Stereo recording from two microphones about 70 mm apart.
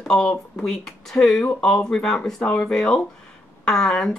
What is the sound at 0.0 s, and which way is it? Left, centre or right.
Speech, centre.